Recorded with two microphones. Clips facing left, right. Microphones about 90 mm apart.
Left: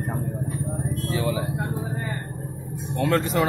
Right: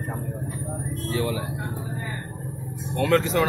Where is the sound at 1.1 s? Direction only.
15° left (ahead or behind).